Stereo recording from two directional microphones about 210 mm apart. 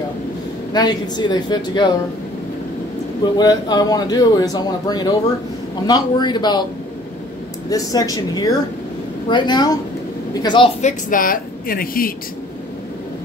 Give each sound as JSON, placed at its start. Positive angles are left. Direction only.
{"t": 0.7, "sound": "speech", "side_deg": 20}
{"t": 3.3, "sound": "speech", "side_deg": 20}
{"t": 7.7, "sound": "speech", "side_deg": 15}
{"t": 10.8, "sound": "a woman's voice", "side_deg": 35}